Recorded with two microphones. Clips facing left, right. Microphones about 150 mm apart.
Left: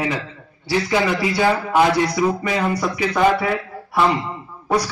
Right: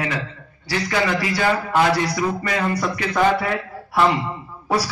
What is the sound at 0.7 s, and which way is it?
Speech, 25° left (ahead or behind).